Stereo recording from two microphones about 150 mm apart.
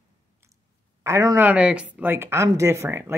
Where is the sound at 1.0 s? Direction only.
20° right (ahead or behind).